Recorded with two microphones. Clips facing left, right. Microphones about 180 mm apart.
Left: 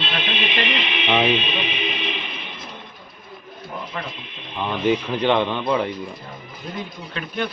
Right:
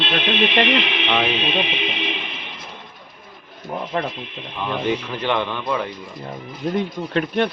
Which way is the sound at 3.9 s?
55° right (ahead or behind).